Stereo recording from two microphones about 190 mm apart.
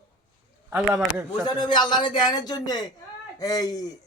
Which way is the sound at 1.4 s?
25° left (ahead or behind).